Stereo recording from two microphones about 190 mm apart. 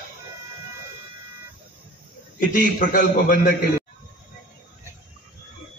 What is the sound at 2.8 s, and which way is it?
Speech, 45° left (ahead or behind).